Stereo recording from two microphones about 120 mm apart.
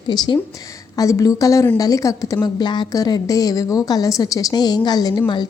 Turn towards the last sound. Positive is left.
turn(degrees=35)  # may be behind; listen again after turning